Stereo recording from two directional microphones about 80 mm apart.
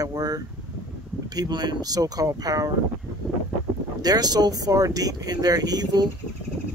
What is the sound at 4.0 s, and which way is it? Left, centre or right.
Speech, right.